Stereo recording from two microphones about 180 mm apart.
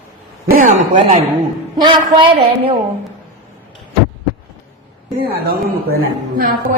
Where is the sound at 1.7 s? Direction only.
25° right (ahead or behind).